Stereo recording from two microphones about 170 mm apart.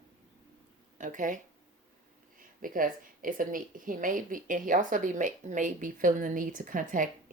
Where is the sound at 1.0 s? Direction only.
50° right (ahead or behind).